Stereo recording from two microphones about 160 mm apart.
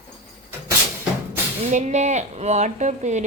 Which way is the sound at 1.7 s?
45° right (ahead or behind).